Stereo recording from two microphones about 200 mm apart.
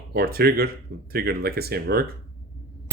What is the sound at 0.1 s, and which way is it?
Speech, 50° right (ahead or behind).